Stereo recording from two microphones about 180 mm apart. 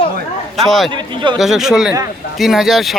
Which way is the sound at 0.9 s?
25° right (ahead or behind).